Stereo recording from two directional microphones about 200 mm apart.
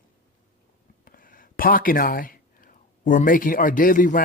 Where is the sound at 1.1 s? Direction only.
45° left (ahead or behind).